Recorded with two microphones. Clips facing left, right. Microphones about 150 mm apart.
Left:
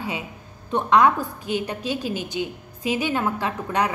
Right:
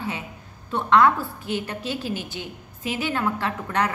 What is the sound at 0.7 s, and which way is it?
A woman's voice, 15° left (ahead or behind).